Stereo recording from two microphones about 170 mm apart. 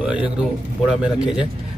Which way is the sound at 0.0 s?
5° right (ahead or behind).